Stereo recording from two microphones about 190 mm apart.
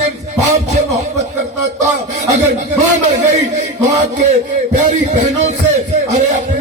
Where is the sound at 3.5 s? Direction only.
40° right (ahead or behind).